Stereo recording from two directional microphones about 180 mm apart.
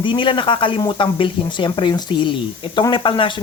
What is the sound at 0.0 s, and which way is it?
Speech, 25° left (ahead or behind).